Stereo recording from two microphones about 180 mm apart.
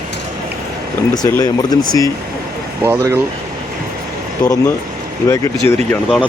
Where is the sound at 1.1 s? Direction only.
20° left (ahead or behind).